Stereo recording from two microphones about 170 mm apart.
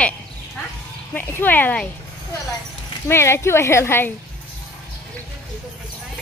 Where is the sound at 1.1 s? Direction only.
10° left (ahead or behind).